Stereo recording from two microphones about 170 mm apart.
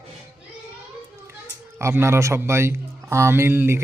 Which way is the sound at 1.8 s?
15° right (ahead or behind).